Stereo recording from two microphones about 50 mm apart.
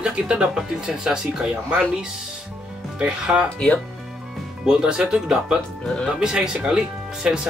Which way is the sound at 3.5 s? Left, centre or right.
Left.